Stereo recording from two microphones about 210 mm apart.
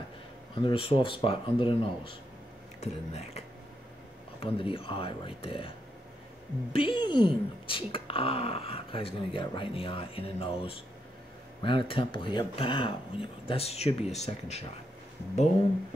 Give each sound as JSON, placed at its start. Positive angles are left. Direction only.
{"t": 0.6, "sound": "speech", "side_deg": 25}
{"t": 6.7, "sound": "speech", "side_deg": 25}